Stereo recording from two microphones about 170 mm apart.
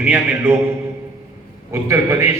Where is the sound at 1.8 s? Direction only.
15° right (ahead or behind).